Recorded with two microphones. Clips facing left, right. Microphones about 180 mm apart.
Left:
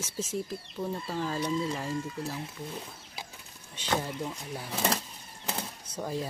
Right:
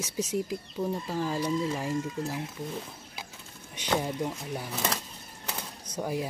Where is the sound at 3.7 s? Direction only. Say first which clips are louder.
Right 2 dB; 15° right (ahead or behind).